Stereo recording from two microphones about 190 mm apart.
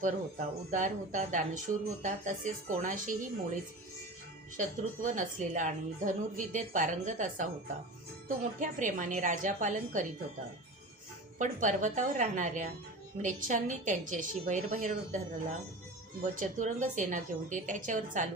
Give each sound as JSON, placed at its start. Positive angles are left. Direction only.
{"t": 0.0, "sound": "speech", "side_deg": -40}
{"t": 8.6, "sound": "speech", "side_deg": -40}
{"t": 11.3, "sound": "speech", "side_deg": -40}
{"t": 16.3, "sound": "speech", "side_deg": -40}